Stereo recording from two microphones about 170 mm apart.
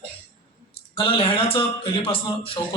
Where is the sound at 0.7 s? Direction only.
30° left (ahead or behind).